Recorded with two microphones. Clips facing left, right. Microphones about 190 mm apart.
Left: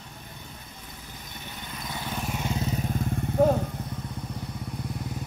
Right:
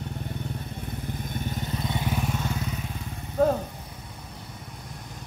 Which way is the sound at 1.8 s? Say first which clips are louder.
Right 3 dB; 25° right (ahead or behind).